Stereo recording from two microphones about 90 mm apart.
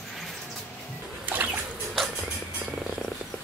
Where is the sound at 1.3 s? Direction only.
20° right (ahead or behind).